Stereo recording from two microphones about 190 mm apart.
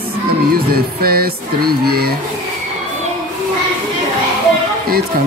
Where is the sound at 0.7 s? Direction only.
55° right (ahead or behind).